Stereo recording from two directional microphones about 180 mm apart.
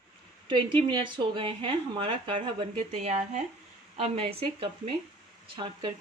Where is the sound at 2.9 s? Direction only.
40° right (ahead or behind).